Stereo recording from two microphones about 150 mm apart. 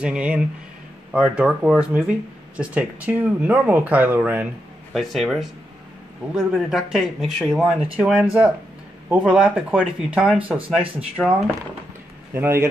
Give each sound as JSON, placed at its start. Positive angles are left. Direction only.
{"t": 0.0, "sound": "speech", "side_deg": -10}
{"t": 4.9, "sound": "speech", "side_deg": 0}
{"t": 12.4, "sound": "speech", "side_deg": -15}